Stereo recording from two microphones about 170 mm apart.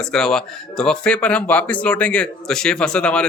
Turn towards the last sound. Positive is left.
turn(degrees=5)  # may be behind; listen again after turning